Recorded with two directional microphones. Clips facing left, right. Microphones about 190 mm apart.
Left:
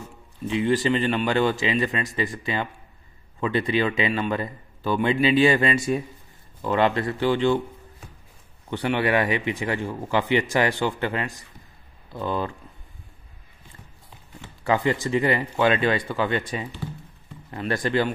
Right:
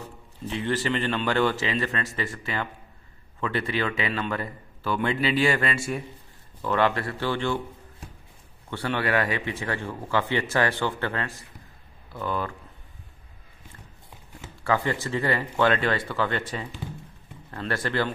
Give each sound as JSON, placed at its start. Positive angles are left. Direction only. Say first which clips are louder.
{"t": 0.5, "sound": "speech", "louder": "left 5 dB", "side_deg": 15}
{"t": 8.6, "sound": "speech", "louder": "left 4 dB", "side_deg": 15}
{"t": 14.6, "sound": "speech", "louder": "left 3 dB", "side_deg": 20}